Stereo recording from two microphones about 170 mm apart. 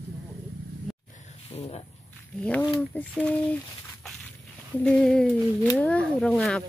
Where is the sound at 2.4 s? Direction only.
5° left (ahead or behind).